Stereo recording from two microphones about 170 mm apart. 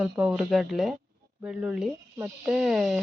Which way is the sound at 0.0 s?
5° right (ahead or behind).